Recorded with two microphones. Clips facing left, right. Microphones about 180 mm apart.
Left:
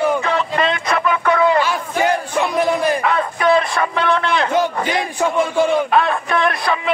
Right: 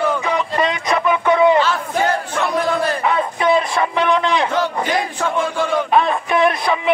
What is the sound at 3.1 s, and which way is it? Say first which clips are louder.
Music: right 2 dB; 20° right (ahead or behind).